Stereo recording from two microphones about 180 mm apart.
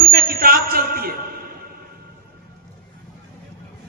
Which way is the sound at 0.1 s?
55° right (ahead or behind).